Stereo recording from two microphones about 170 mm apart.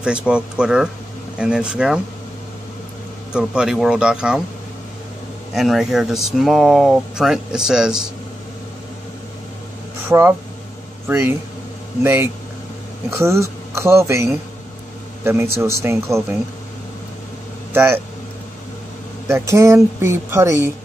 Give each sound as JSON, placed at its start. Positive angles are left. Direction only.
{"t": 0.0, "sound": "speech", "side_deg": -5}
{"t": 3.3, "sound": "speech", "side_deg": -5}
{"t": 5.5, "sound": "speech", "side_deg": 0}
{"t": 10.0, "sound": "speech", "side_deg": -15}
{"t": 17.7, "sound": "speech", "side_deg": -15}
{"t": 19.2, "sound": "speech", "side_deg": -15}